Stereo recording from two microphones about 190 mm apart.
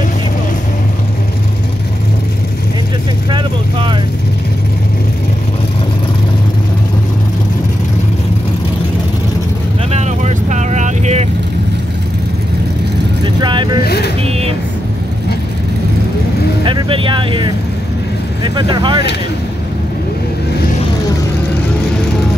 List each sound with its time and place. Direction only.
3.3 s vehicle: 25° right (ahead or behind)
9.8 s vehicle: 35° right (ahead or behind)
13.2 s vehicle: 25° right (ahead or behind)
13.8 s vehicle: 55° left (ahead or behind)
16.6 s vehicle: 25° right (ahead or behind)